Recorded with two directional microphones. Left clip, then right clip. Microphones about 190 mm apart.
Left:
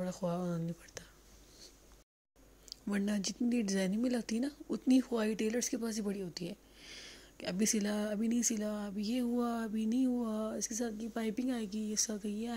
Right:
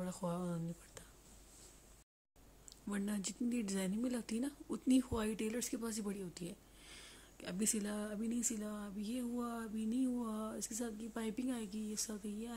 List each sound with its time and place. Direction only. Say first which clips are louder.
0.0 s speech: left 5 dB; 15° left (ahead or behind)
2.7 s speech: left 6 dB; 20° left (ahead or behind)